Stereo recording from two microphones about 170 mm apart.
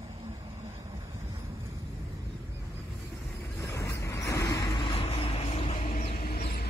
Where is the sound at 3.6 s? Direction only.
20° left (ahead or behind); by 6.6 s 65° left (ahead or behind).